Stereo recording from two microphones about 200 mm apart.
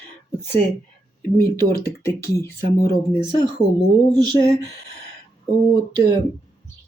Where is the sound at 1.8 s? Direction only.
15° left (ahead or behind).